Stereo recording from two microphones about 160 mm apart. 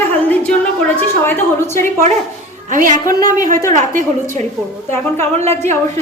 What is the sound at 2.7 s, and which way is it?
Speech, 55° right (ahead or behind).